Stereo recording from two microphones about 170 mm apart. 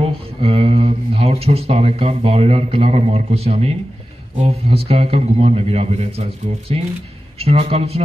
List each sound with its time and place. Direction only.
0.0 s speech: 35° right (ahead or behind)
7.3 s speech: 35° right (ahead or behind)